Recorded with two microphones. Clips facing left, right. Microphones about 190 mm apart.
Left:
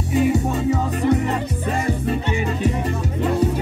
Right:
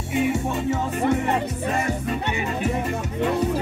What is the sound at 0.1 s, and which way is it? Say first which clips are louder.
Music: left 4 dB; 35° left (ahead or behind).